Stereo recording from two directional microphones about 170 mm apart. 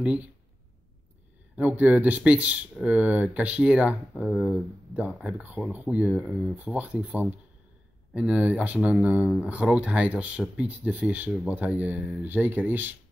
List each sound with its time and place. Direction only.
0.0 s speech: 5° right (ahead or behind)
1.6 s speech: 10° right (ahead or behind)